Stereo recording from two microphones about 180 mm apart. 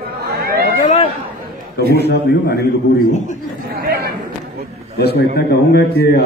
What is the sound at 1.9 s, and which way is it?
Speech, 65° left (ahead or behind).